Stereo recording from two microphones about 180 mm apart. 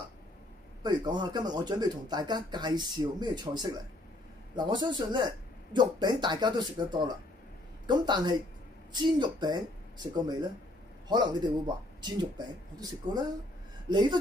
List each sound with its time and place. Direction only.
0.8 s speech: 25° right (ahead or behind)